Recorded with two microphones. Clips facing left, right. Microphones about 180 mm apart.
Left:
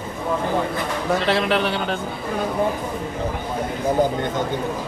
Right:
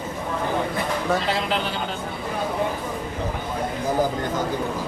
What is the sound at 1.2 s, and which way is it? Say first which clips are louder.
Speech: left 5 dB; 65° left (ahead or behind).